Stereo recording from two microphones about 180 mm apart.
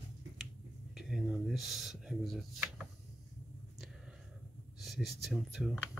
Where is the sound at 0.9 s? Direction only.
Centre (ahead or behind).